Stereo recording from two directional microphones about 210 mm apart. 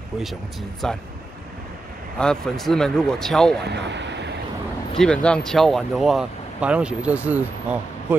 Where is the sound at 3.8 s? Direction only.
55° right (ahead or behind).